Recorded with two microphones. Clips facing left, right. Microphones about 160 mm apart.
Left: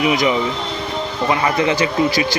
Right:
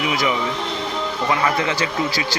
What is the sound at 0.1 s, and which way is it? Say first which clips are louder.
Speech: left 4 dB; 20° left (ahead or behind).